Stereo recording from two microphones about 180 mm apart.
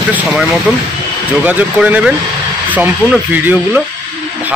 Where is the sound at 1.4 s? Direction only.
10° right (ahead or behind).